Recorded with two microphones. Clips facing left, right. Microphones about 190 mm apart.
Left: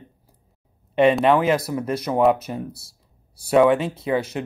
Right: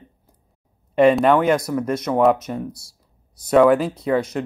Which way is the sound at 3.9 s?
25° left (ahead or behind).